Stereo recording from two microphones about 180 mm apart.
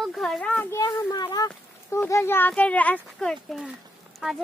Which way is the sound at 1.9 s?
15° left (ahead or behind).